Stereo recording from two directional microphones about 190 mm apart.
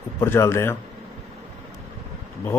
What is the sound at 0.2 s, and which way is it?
Speech, 15° left (ahead or behind).